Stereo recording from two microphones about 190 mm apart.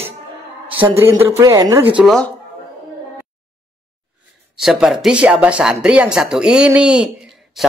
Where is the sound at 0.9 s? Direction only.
15° right (ahead or behind).